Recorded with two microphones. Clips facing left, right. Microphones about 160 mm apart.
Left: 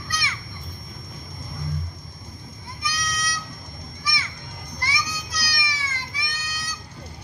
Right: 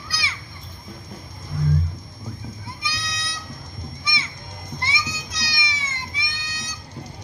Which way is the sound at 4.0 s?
25° right (ahead or behind).